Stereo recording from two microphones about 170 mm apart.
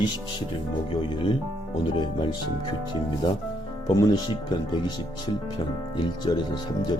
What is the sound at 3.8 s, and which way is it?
Speech, 25° left (ahead or behind).